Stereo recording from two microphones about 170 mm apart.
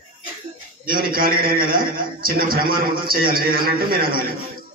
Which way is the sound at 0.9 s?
60° right (ahead or behind).